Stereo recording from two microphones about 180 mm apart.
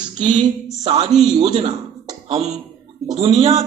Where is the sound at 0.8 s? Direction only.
30° right (ahead or behind).